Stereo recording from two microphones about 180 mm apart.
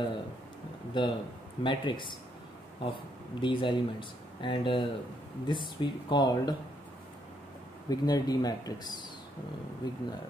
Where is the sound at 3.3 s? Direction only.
25° left (ahead or behind).